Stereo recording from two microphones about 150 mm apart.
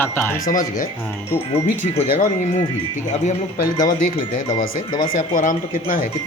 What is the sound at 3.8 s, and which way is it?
Speech, 65° left (ahead or behind).